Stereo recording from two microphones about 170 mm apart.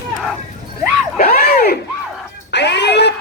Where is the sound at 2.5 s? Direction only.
85° left.